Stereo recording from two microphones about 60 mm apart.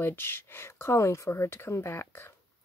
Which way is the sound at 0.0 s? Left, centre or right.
Left.